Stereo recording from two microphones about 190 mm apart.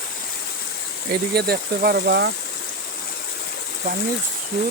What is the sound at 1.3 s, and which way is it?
Speech, 55° right (ahead or behind).